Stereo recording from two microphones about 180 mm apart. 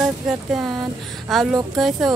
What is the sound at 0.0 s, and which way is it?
Speech, centre (ahead or behind).